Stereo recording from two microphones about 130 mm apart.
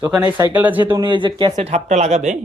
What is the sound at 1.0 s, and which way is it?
Speech, 40° right (ahead or behind).